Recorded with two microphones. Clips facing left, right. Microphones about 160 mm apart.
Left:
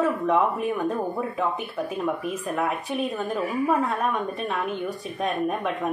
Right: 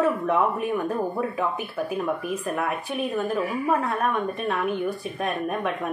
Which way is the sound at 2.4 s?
Centre (ahead or behind).